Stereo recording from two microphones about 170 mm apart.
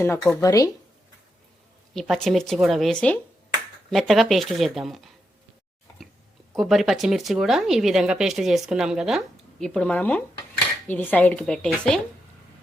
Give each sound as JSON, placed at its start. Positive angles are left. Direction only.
{"t": 0.3, "sound": "speech", "side_deg": 15}
{"t": 1.9, "sound": "speech", "side_deg": 0}
{"t": 6.6, "sound": "a woman's voice", "side_deg": 0}